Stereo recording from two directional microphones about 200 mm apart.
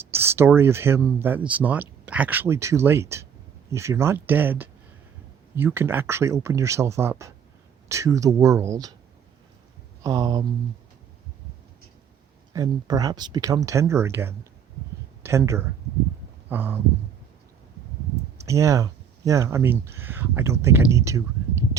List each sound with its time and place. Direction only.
0.0 s speech: 10° right (ahead or behind)
10.0 s speech: 15° right (ahead or behind)
12.5 s speech: 20° right (ahead or behind)
16.5 s a sound: 10° right (ahead or behind)
18.4 s speech: 15° right (ahead or behind)